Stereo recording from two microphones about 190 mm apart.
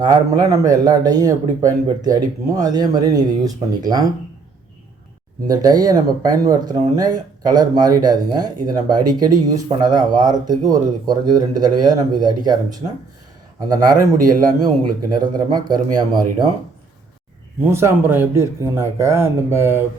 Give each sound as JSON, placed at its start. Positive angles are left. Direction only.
{"t": 0.0, "sound": "speech", "side_deg": -20}
{"t": 5.5, "sound": "speech", "side_deg": -20}
{"t": 13.6, "sound": "speech", "side_deg": -20}
{"t": 15.1, "sound": "speech", "side_deg": -20}
{"t": 17.6, "sound": "speech", "side_deg": -15}